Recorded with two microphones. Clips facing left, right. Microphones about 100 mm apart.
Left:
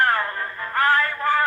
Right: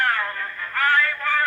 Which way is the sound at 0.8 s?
30° left (ahead or behind).